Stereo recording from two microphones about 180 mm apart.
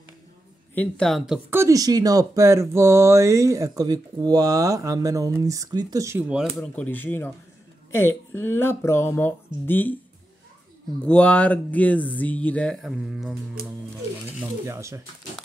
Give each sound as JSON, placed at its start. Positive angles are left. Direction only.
{"t": 0.7, "sound": "speech", "side_deg": 5}
{"t": 1.6, "sound": "speech", "side_deg": -20}
{"t": 6.7, "sound": "speech", "side_deg": 10}
{"t": 11.1, "sound": "speech", "side_deg": 5}
{"t": 13.6, "sound": "sewing machine", "side_deg": -55}
{"t": 14.7, "sound": "speech", "side_deg": -15}